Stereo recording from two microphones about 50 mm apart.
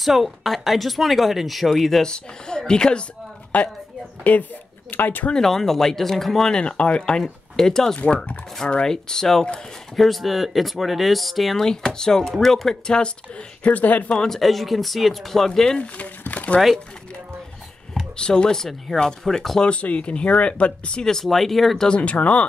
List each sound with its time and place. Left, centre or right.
0.0 s speech: centre
2.0 s speech: centre
3.5 s speech: left
5.3 s speech: centre
6.5 s speech: left
9.9 s speech: centre
11.6 s speech: centre; by 14.0 s left
14.0 s speech: centre
14.3 s speech: centre
15.8 s a sound: left
18.1 s speech: centre
19.6 s speech: left; by 21.8 s centre
21.8 s speech: left